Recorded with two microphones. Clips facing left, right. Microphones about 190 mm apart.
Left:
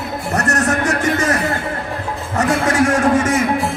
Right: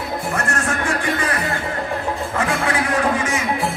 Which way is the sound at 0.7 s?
45° left (ahead or behind).